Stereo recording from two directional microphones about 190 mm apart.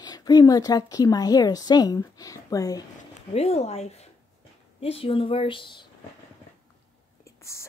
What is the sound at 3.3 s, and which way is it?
A woman's voice, 30° left (ahead or behind).